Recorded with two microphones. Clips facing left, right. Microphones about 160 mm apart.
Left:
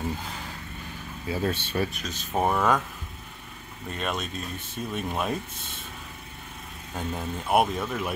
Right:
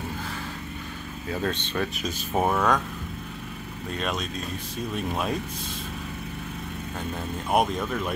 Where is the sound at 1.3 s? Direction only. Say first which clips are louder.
Left 1 dB; 10° left (ahead or behind).